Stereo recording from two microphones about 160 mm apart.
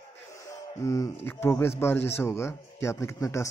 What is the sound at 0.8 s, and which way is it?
A man's voice, 20° left (ahead or behind).